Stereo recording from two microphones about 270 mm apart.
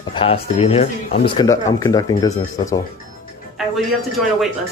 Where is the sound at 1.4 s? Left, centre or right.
Centre.